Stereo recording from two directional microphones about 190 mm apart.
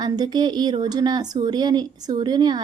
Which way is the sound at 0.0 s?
20° right (ahead or behind).